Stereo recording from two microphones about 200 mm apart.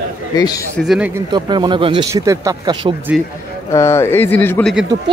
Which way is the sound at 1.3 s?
25° right (ahead or behind).